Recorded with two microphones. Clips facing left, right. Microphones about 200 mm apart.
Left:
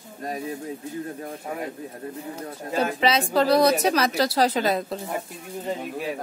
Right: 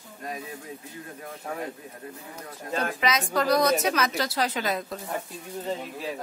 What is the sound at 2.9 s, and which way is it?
A woman's voice, 30° left (ahead or behind).